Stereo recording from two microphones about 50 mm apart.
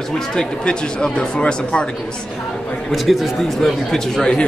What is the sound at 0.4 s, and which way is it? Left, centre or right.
Speech, centre.